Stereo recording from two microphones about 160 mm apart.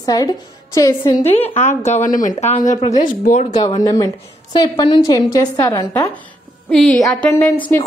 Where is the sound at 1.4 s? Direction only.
45° left (ahead or behind).